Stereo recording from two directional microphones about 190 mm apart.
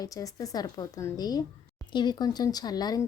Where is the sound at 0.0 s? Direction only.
20° left (ahead or behind).